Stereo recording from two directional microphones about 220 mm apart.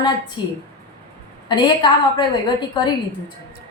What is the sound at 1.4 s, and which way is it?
A woman's voice, 20° left (ahead or behind).